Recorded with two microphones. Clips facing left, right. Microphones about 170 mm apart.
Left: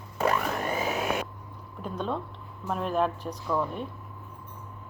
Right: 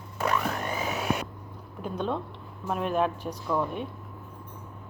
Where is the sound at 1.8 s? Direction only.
Centre (ahead or behind).